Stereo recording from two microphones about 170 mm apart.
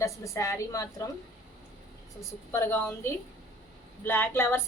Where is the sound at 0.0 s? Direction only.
15° left (ahead or behind).